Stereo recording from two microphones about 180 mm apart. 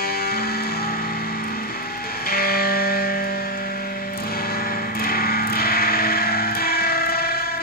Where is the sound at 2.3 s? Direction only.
55° left (ahead or behind).